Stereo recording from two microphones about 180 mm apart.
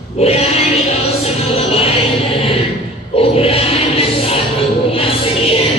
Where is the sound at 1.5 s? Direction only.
35° left (ahead or behind).